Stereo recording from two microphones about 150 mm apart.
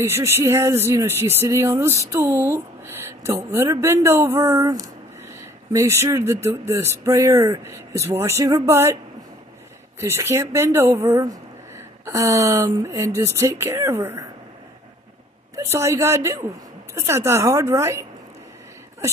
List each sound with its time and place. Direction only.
0.0 s speech: 15° right (ahead or behind)
9.9 s speech: 15° right (ahead or behind)
15.5 s speech: 20° right (ahead or behind)